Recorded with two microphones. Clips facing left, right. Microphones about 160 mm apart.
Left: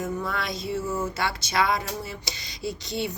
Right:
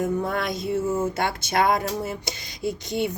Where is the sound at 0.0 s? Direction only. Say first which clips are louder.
Right 5 dB; 50° right (ahead or behind).